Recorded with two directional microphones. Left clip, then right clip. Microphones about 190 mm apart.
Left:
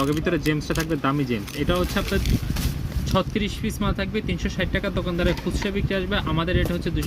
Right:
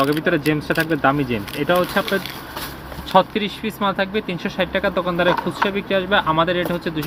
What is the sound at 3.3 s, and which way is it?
Speech, 25° left (ahead or behind).